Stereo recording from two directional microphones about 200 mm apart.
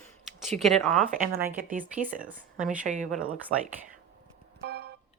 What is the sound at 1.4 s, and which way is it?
Speech, 10° right (ahead or behind).